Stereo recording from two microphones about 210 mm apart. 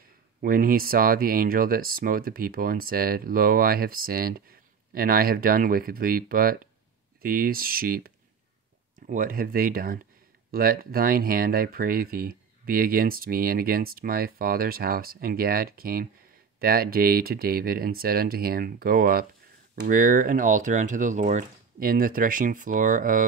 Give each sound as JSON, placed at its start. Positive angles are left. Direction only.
{"t": 0.4, "sound": "speech", "side_deg": -45}